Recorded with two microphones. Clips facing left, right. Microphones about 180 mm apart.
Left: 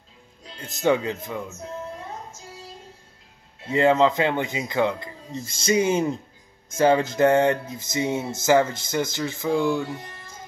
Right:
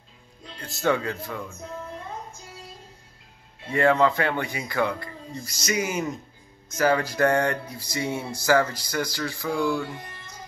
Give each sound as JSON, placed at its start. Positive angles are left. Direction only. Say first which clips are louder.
{"t": 0.6, "sound": "music", "louder": "left 3 dB", "side_deg": 20}
{"t": 3.7, "sound": "music", "louder": "left 2 dB", "side_deg": 20}